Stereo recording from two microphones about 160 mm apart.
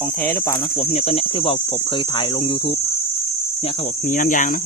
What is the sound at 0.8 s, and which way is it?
Speech, 40° left (ahead or behind).